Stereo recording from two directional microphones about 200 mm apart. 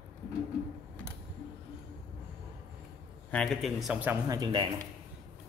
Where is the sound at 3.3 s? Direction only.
Centre (ahead or behind); by 4.8 s 20° right (ahead or behind).